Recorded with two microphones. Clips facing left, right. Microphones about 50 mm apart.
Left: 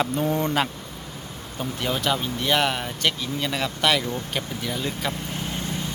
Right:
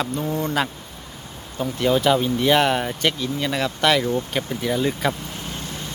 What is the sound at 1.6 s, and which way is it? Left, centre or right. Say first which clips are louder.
Speech: right 7 dB; centre.